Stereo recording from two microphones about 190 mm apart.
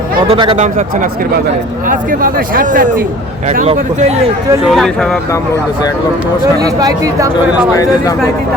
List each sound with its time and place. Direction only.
0.3 s speech: 30° right (ahead or behind)
1.9 s a man's voice: 45° right (ahead or behind)
4.6 s speech: centre (ahead or behind)
6.6 s speech: 20° right (ahead or behind)